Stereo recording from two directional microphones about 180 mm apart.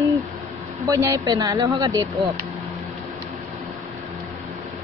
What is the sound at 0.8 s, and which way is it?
A woman's voice, 20° right (ahead or behind).